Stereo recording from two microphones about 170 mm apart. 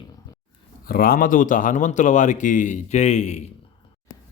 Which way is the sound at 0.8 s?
60° left (ahead or behind).